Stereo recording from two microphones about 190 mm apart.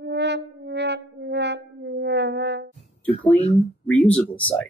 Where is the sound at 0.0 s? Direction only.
65° right (ahead or behind).